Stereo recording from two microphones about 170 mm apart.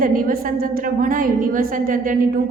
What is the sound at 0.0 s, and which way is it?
A woman's voice, 55° right (ahead or behind).